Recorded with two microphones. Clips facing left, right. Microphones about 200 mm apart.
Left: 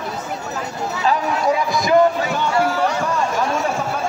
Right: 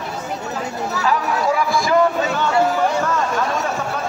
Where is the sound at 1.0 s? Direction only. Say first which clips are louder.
Left 1 dB; 20° left (ahead or behind).